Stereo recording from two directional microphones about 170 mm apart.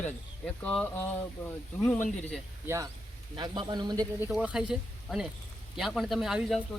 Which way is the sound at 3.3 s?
25° right (ahead or behind).